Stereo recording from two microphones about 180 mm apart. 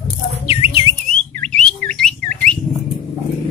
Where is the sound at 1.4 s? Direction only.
5° left (ahead or behind).